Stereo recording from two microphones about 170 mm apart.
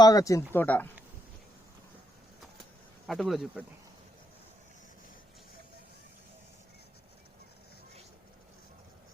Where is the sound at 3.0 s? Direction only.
Centre (ahead or behind).